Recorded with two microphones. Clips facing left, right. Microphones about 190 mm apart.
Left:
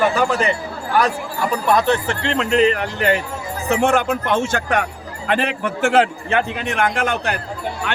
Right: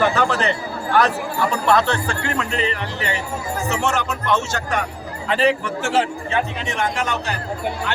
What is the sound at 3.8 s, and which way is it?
A man's voice, 55° left (ahead or behind).